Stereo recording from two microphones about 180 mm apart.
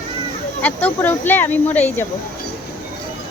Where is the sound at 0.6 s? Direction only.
10° left (ahead or behind).